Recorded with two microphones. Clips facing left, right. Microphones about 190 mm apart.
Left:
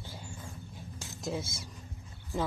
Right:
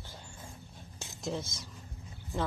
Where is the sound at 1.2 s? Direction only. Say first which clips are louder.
Left 1 dB; 10° left (ahead or behind).